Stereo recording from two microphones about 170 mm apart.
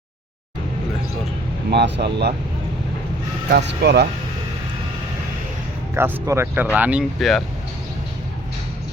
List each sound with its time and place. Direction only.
1.7 s speech: 80° right
3.5 s speech: 90° right
5.9 s speech: 15° right (ahead or behind); by 7.4 s centre (ahead or behind)